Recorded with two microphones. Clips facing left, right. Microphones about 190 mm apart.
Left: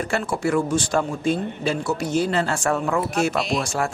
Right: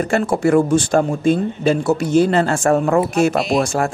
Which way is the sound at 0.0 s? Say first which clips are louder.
Right 7 dB; 50° right (ahead or behind).